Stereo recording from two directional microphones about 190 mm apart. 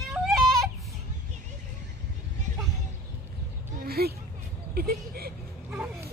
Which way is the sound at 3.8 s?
55° right (ahead or behind).